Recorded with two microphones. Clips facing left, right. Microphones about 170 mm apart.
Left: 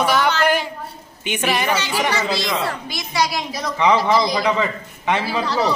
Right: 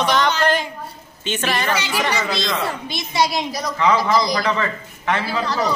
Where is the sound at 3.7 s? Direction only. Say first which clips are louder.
Left 1 dB; 20° left (ahead or behind).